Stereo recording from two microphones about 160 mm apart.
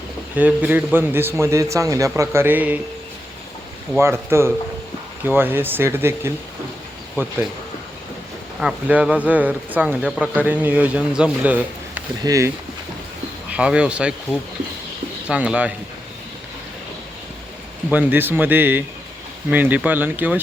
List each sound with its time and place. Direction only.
0.3 s speech: 10° right (ahead or behind)
3.9 s speech: 15° right (ahead or behind)
8.6 s speech: 5° right (ahead or behind)
12.2 s speech: 20° right (ahead or behind)
13.5 s speech: 5° right (ahead or behind)
15.3 s speech: 5° right (ahead or behind)
17.8 s speech: 10° right (ahead or behind)